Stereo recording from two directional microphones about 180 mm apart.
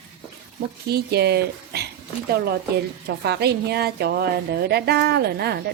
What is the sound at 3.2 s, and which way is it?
Speech, 65° right (ahead or behind).